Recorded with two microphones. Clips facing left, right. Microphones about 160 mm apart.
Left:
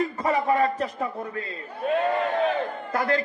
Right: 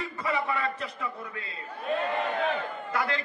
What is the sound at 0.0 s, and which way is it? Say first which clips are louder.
A man's voice: left 7 dB; 40° left (ahead or behind).